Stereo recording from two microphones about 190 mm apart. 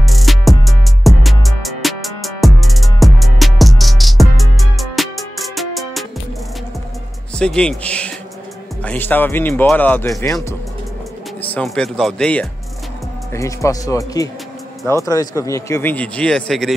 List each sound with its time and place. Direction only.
0.0 s music: centre (ahead or behind)
7.3 s a man's voice: 5° left (ahead or behind)
11.4 s speech: 5° left (ahead or behind)
13.3 s a man's voice: 15° left (ahead or behind)